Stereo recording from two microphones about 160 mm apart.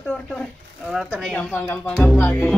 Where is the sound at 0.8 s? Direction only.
5° right (ahead or behind).